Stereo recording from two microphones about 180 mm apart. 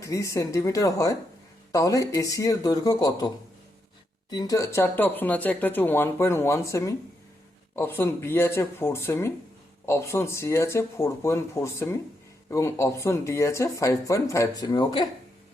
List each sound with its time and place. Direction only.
0.0 s speech: 15° left (ahead or behind)